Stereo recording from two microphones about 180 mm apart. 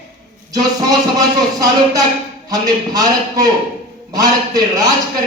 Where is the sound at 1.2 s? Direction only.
20° right (ahead or behind).